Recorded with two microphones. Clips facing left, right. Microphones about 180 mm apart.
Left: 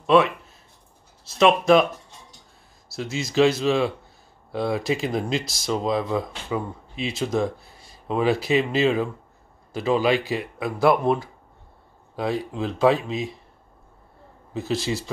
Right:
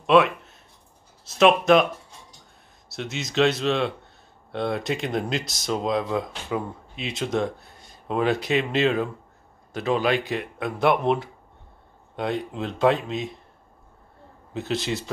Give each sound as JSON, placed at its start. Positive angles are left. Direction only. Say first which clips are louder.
{"t": 0.0, "sound": "speech", "louder": "even", "side_deg": 0}
{"t": 3.0, "sound": "speech", "louder": "left 3 dB", "side_deg": 0}
{"t": 14.5, "sound": "speech", "louder": "left 1 dB", "side_deg": 0}